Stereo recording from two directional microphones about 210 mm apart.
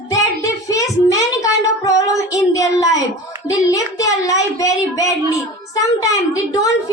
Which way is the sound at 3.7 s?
15° left (ahead or behind).